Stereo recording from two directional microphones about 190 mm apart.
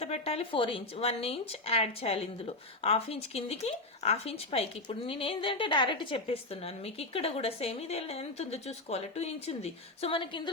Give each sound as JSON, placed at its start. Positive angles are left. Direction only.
{"t": 0.0, "sound": "speech", "side_deg": 30}